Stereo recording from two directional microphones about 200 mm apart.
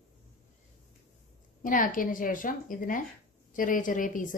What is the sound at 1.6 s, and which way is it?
A woman's voice, 40° left (ahead or behind).